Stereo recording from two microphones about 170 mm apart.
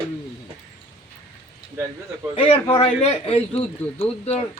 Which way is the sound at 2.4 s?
30° left (ahead or behind).